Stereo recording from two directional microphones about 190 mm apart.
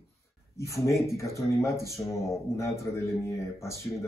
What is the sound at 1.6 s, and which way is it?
Speech, 15° left (ahead or behind).